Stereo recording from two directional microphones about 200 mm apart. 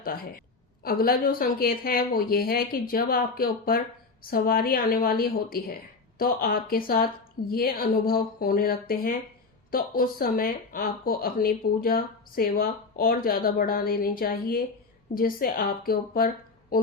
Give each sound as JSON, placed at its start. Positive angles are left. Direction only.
{"t": 0.9, "sound": "speech", "side_deg": 50}